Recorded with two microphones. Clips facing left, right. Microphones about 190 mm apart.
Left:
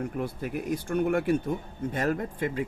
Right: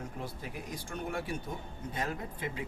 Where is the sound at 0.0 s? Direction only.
60° left (ahead or behind).